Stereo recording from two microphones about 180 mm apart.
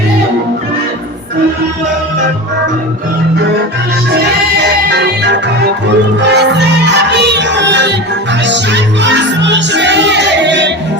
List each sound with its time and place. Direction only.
4.6 s music: 70° right (ahead or behind)